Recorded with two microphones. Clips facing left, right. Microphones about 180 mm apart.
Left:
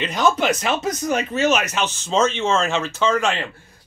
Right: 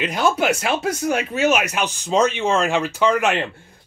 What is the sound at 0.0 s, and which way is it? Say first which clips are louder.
Speech: even; 10° right (ahead or behind).